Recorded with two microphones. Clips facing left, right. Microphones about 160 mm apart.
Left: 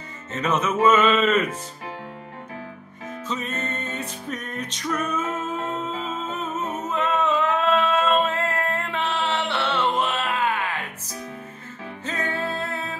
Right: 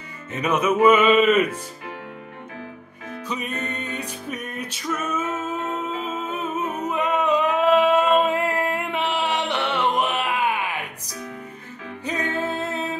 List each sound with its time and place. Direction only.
0.3 s music: 10° right (ahead or behind)
3.3 s music: 15° right (ahead or behind)
5.9 s humming: 10° right (ahead or behind)
12.0 s music: 15° right (ahead or behind)